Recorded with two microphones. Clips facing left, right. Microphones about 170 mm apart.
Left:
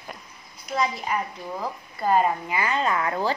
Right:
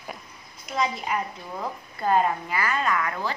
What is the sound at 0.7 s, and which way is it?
A woman's voice, centre (ahead or behind).